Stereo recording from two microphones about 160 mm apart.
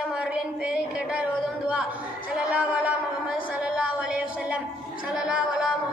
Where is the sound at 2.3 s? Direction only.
10° right (ahead or behind).